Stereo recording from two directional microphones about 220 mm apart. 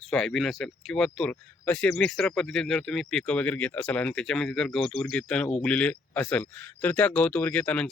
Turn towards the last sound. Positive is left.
turn(degrees=5)  # may be behind; listen again after turning